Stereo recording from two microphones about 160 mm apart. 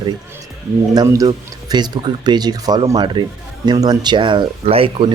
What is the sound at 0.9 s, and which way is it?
A man's voice, 20° right (ahead or behind).